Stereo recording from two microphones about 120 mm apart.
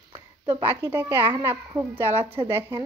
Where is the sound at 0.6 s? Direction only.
20° right (ahead or behind).